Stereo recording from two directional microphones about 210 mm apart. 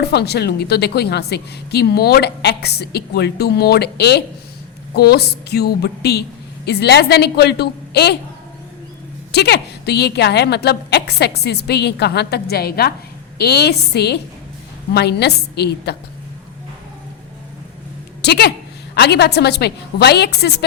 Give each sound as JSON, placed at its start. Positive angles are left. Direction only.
{"t": 0.0, "sound": "a woman's voice", "side_deg": 50}
{"t": 9.3, "sound": "a woman's voice", "side_deg": 50}
{"t": 18.2, "sound": "a woman's voice", "side_deg": 50}